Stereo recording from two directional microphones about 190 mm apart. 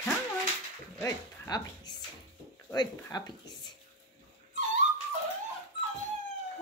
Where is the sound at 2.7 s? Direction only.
20° left (ahead or behind).